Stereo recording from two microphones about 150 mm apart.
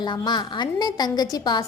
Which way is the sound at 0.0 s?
30° left (ahead or behind).